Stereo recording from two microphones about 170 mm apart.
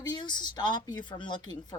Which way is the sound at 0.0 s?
25° left (ahead or behind).